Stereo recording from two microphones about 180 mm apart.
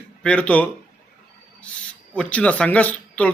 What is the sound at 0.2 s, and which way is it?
A man's voice, 5° left (ahead or behind).